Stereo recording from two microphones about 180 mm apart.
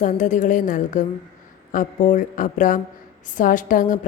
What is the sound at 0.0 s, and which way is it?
A woman's voice, 45° left (ahead or behind).